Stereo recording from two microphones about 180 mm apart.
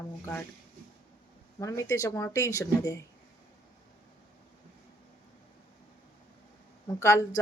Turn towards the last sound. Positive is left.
turn(degrees=20)  # may be behind; listen again after turning